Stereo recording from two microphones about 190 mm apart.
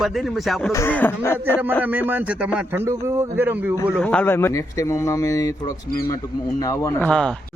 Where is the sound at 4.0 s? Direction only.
5° left (ahead or behind).